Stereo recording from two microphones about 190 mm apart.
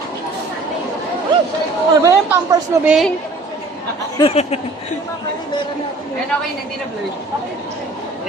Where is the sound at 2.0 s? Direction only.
15° right (ahead or behind).